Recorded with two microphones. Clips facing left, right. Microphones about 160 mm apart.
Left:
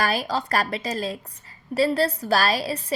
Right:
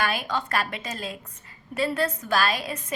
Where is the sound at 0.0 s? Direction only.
35° left (ahead or behind).